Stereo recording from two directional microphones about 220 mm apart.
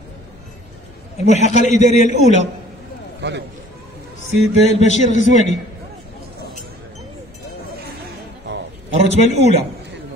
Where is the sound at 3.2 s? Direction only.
50° right (ahead or behind).